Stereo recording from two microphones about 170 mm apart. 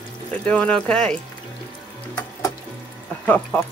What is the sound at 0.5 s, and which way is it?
Speech, 5° left (ahead or behind).